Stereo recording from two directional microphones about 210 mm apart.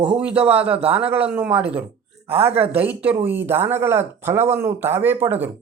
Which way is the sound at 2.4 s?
30° right (ahead or behind).